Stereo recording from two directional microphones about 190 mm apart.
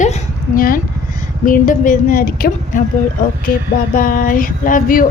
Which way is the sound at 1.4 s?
45° left (ahead or behind).